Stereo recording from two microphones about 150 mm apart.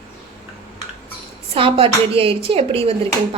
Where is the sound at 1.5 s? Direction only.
35° right (ahead or behind).